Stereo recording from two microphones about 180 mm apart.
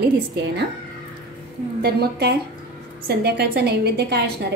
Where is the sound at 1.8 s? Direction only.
65° right (ahead or behind).